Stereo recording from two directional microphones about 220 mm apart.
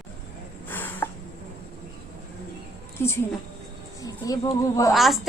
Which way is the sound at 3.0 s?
10° left (ahead or behind).